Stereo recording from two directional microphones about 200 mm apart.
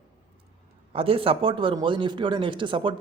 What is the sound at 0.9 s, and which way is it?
Speech, 30° right (ahead or behind).